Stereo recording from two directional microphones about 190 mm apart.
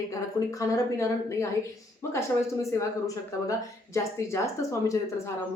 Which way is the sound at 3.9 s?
15° left (ahead or behind).